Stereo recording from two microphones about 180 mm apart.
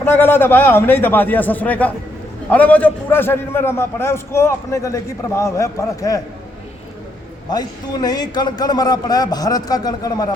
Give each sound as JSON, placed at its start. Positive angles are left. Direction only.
{"t": 0.0, "sound": "a man's voice", "side_deg": 10}
{"t": 7.5, "sound": "a man's voice", "side_deg": 20}